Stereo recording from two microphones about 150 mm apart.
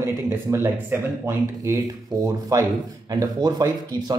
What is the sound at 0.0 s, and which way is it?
A man's voice, 15° right (ahead or behind).